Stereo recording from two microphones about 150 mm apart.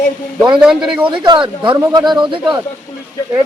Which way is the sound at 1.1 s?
30° right (ahead or behind).